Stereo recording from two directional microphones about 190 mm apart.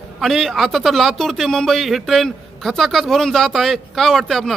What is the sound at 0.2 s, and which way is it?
A man's voice, centre (ahead or behind).